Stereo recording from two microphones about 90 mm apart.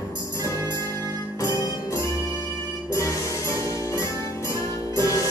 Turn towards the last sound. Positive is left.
turn(degrees=40)  # may be behind; listen again after turning